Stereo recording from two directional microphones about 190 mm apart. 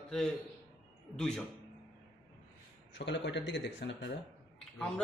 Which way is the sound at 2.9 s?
70° left (ahead or behind).